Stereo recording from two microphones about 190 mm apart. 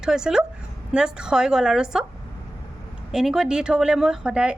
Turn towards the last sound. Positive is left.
turn(degrees=-5)  # may be behind; listen again after turning